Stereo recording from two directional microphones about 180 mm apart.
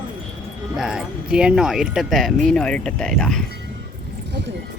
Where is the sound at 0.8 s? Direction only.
5° right (ahead or behind).